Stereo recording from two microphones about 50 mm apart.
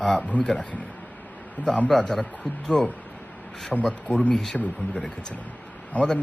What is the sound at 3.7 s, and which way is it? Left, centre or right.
Speech, centre.